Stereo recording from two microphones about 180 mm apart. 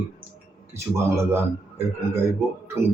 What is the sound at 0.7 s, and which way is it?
Speech, 15° right (ahead or behind).